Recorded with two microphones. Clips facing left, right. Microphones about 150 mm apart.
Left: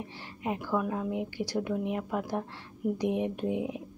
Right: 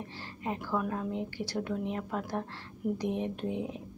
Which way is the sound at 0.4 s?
15° left (ahead or behind).